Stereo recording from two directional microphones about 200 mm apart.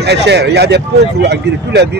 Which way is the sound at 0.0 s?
55° right (ahead or behind).